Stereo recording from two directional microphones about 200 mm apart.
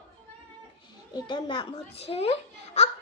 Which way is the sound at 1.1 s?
25° left (ahead or behind).